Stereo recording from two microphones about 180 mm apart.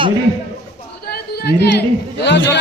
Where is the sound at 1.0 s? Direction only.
60° left (ahead or behind).